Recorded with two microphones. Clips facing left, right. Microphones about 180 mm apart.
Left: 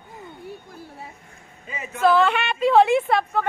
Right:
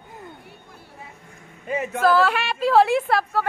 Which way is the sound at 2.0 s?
5° right (ahead or behind).